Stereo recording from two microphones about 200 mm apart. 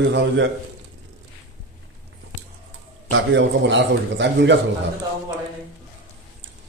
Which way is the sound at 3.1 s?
65° right (ahead or behind).